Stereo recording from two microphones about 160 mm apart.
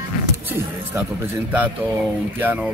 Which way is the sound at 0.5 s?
15° right (ahead or behind).